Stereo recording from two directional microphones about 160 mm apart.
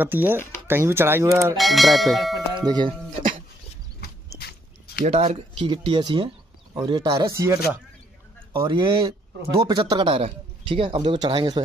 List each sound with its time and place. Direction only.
0.0 s speech: 15° right (ahead or behind)
1.6 s speech: centre (ahead or behind)
2.6 s speech: 25° right (ahead or behind)
3.2 s music: 55° right (ahead or behind)
4.4 s dog: 80° left
5.0 s speech: 45° right (ahead or behind)
5.6 s speech: 30° right (ahead or behind)
7.3 s speech: 15° right (ahead or behind)
8.5 s a man's voice: 30° right (ahead or behind)